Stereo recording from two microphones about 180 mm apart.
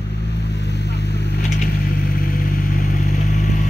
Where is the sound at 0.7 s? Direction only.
70° left (ahead or behind).